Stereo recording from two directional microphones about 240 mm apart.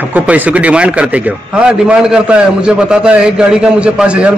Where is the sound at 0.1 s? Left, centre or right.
Centre.